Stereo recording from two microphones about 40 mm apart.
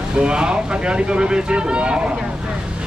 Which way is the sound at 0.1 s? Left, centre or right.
Right.